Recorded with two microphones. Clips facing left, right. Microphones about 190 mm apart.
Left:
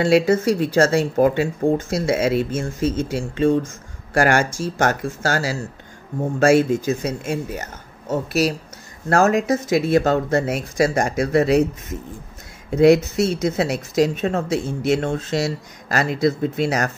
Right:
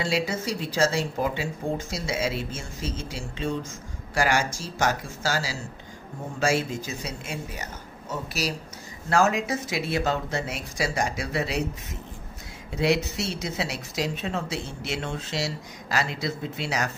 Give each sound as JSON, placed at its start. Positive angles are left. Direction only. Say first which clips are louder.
{"t": 0.0, "sound": "speech", "louder": "left 11 dB", "side_deg": 55}
{"t": 12.7, "sound": "speech", "louder": "left 11 dB", "side_deg": 50}